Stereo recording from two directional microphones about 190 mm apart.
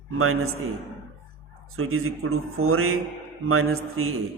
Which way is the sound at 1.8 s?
90° right.